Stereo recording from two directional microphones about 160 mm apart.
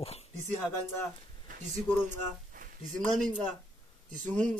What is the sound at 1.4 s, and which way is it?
Speech, 55° right (ahead or behind).